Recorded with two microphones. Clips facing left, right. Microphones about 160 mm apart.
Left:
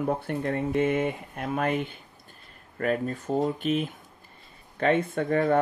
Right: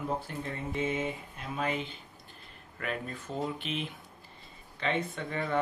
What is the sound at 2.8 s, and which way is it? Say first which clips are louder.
Speech: left 10 dB; 45° left (ahead or behind).